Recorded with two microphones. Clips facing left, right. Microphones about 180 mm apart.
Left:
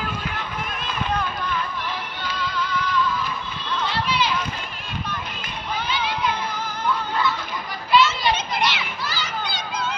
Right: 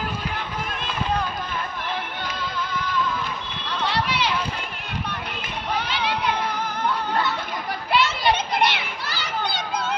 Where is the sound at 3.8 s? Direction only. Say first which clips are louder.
Even; 70° right (ahead or behind).